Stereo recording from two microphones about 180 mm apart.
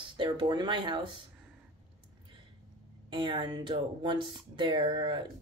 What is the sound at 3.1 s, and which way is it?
Speech, 25° right (ahead or behind).